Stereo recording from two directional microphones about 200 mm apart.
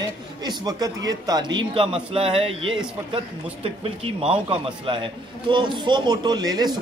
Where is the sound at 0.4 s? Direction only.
20° right (ahead or behind).